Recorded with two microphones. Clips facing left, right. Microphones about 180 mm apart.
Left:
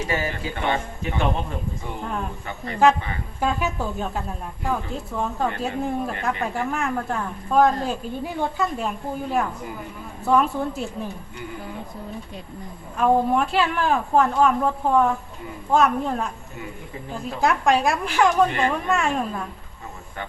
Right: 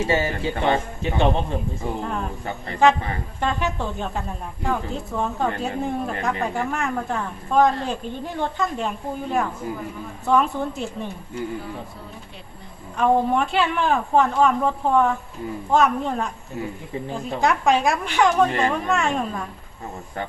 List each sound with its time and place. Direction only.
0.0 s speech: 25° right (ahead or behind)
2.0 s a woman's voice: centre (ahead or behind)
3.4 s a woman's voice: 5° left (ahead or behind)
13.0 s a woman's voice: centre (ahead or behind)